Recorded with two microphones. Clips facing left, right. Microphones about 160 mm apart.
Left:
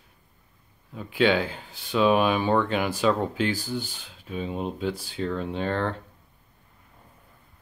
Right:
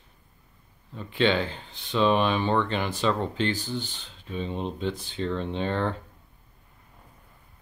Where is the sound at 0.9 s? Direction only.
5° left (ahead or behind).